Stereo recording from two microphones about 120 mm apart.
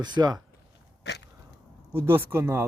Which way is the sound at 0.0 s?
35° right (ahead or behind).